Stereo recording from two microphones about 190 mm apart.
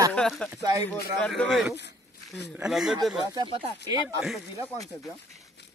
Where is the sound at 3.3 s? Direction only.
25° right (ahead or behind).